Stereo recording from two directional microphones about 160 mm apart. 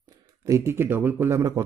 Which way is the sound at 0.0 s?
20° right (ahead or behind).